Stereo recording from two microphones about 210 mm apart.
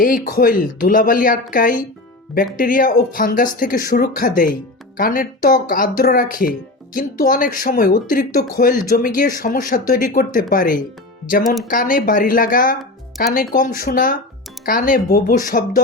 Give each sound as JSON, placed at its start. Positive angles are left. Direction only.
{"t": 0.0, "sound": "speech", "side_deg": 45}